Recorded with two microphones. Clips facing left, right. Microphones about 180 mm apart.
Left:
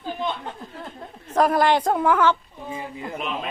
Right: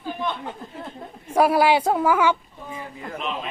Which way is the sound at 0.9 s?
10° right (ahead or behind).